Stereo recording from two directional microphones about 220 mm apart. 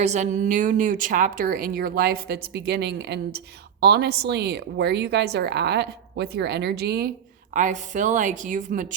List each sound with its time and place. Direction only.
0.0 s a woman's voice: 30° right (ahead or behind)
7.5 s a woman's voice: 35° right (ahead or behind)